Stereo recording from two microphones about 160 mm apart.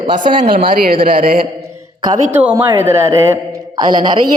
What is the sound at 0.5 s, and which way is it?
Speech, 65° right (ahead or behind).